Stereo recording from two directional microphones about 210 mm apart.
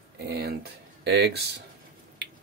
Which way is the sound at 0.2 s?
50° right (ahead or behind).